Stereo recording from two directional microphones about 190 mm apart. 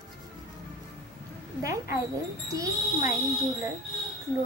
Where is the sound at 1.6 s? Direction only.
15° right (ahead or behind).